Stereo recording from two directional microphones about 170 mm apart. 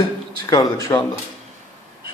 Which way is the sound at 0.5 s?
20° left (ahead or behind).